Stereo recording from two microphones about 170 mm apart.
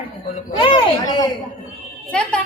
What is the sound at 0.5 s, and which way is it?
Speech, 30° left (ahead or behind).